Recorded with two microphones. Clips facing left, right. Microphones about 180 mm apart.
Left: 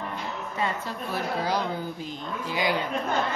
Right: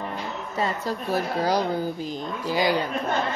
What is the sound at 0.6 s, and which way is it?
Speech, 35° right (ahead or behind).